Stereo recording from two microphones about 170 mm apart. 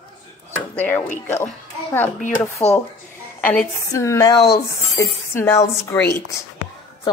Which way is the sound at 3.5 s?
10° left (ahead or behind).